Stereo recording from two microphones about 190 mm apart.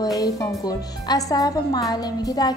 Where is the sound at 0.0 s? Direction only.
20° left (ahead or behind).